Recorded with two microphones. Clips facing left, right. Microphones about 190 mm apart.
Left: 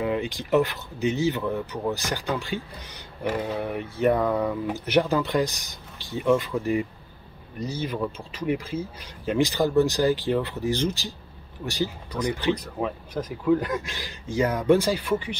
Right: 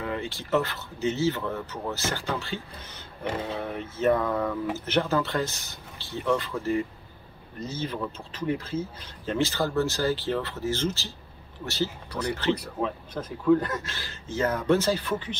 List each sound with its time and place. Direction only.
0.0 s speech: 15° left (ahead or behind)